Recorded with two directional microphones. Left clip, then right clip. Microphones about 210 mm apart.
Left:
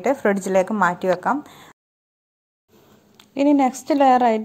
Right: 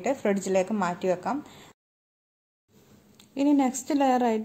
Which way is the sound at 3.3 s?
15° left (ahead or behind).